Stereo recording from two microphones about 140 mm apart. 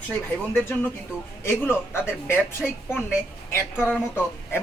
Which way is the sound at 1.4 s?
15° left (ahead or behind).